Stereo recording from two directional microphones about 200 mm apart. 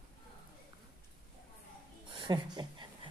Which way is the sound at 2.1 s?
20° right (ahead or behind).